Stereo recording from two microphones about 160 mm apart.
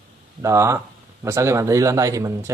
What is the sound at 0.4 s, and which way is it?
Speech, 20° right (ahead or behind).